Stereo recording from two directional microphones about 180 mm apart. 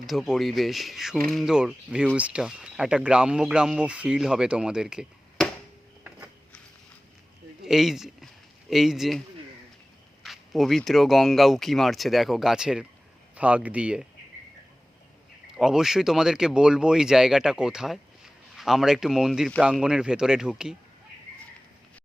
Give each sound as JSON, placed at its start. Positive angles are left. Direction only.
{"t": 0.0, "sound": "speech", "side_deg": 0}
{"t": 7.6, "sound": "a sound", "side_deg": 0}
{"t": 8.7, "sound": "speech", "side_deg": 0}
{"t": 10.2, "sound": "speech", "side_deg": 0}
{"t": 15.5, "sound": "speech", "side_deg": -5}